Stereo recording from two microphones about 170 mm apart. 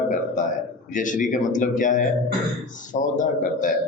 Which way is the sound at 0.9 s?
50° left (ahead or behind).